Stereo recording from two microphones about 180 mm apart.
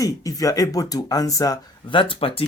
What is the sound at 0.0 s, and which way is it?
Speech, 20° left (ahead or behind).